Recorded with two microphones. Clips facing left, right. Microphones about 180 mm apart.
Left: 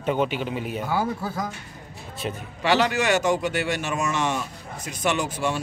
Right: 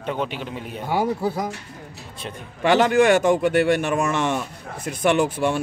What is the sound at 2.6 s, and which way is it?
Speech, 50° right (ahead or behind).